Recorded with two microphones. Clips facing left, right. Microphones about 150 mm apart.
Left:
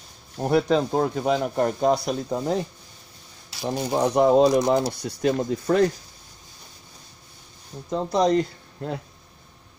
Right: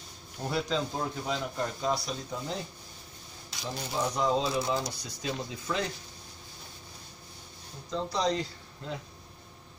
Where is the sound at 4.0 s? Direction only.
60° left (ahead or behind).